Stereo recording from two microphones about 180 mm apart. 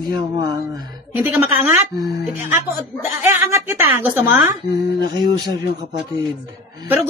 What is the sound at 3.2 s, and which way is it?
A woman's voice, 15° right (ahead or behind).